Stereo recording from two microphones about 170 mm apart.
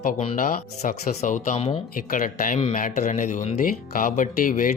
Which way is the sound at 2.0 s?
55° left (ahead or behind).